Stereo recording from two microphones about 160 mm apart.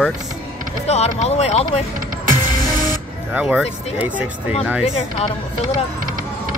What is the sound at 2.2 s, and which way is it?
Music, 60° right (ahead or behind).